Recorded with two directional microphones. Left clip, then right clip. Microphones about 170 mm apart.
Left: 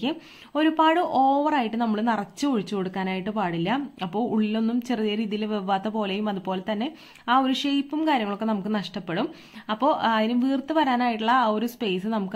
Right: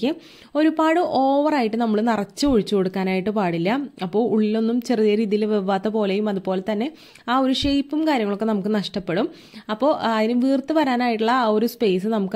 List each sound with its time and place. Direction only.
0.5 s a woman's voice: 25° right (ahead or behind)